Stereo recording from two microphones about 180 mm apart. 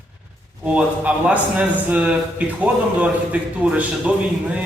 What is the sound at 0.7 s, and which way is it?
A man's voice, 5° right (ahead or behind).